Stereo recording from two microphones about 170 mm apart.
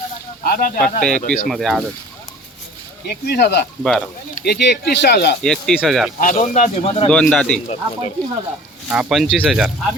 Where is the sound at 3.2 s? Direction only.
70° left (ahead or behind).